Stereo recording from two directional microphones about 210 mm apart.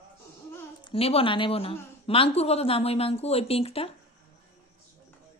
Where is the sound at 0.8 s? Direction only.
25° left (ahead or behind).